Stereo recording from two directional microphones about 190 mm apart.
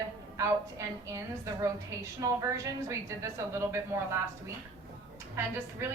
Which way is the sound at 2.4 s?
15° right (ahead or behind).